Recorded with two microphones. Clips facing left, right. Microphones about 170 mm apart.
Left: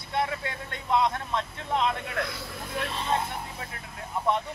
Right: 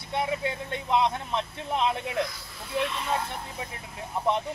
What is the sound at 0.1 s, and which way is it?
Speech, 15° right (ahead or behind).